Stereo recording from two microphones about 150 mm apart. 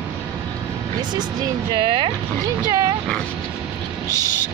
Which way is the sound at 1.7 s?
35° right (ahead or behind).